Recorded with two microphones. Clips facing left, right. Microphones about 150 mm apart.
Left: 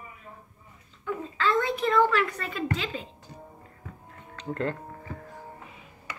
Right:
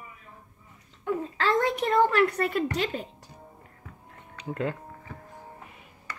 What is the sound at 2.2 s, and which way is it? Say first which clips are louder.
Speech: right 6 dB; 65° right (ahead or behind).